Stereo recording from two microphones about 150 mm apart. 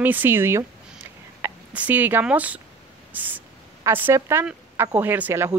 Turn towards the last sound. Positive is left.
turn(degrees=-15)  # may be behind; listen again after turning